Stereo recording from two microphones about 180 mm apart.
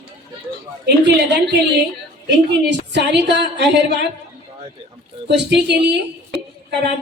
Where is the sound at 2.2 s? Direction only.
70° right (ahead or behind).